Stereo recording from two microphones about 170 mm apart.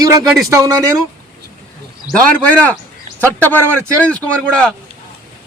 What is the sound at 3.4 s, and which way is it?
A man's voice, 10° left (ahead or behind).